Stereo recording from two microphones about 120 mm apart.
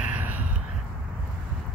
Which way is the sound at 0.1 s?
15° right (ahead or behind).